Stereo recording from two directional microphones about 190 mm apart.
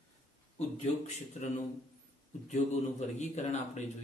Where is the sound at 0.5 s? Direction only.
35° left (ahead or behind).